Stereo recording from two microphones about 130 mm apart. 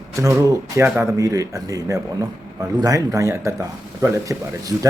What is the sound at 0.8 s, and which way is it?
Speech, 20° right (ahead or behind).